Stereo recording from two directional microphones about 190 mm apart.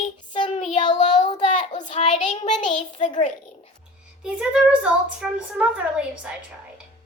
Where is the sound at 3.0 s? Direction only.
40° left (ahead or behind).